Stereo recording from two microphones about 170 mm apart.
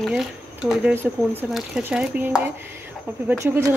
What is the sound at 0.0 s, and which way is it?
Speech, centre (ahead or behind).